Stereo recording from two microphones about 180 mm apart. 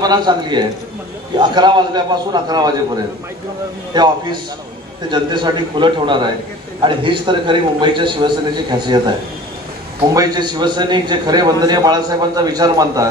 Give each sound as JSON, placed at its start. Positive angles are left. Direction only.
{"t": 0.0, "sound": "a man's voice", "side_deg": -25}
{"t": 3.9, "sound": "a man's voice", "side_deg": -25}
{"t": 10.1, "sound": "a man's voice", "side_deg": -20}